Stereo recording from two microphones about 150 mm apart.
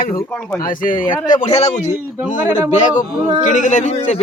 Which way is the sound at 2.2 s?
10° right (ahead or behind).